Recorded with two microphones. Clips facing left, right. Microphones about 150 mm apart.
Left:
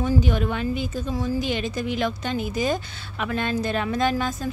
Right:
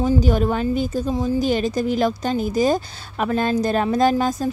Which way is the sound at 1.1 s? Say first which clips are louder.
Right 3 dB; 25° right (ahead or behind).